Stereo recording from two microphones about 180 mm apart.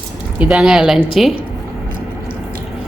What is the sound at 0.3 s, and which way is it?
Speech, 5° right (ahead or behind).